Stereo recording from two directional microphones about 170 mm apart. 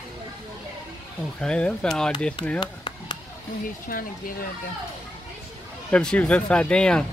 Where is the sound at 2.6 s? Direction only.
25° left (ahead or behind).